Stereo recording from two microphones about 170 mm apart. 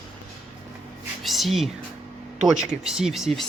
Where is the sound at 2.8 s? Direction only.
5° right (ahead or behind).